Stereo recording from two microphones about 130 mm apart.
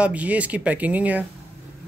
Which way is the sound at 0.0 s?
10° right (ahead or behind).